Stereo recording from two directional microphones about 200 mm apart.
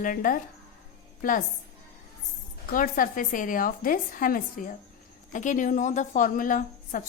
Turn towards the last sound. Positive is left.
turn(degrees=40)  # may be behind; listen again after turning